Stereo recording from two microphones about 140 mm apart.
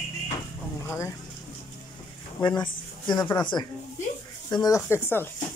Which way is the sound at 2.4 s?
35° left (ahead or behind).